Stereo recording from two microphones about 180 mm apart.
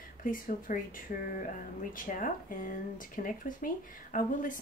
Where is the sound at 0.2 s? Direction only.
50° left (ahead or behind).